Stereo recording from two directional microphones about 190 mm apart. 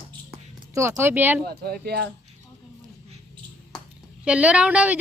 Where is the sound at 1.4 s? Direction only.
55° right (ahead or behind).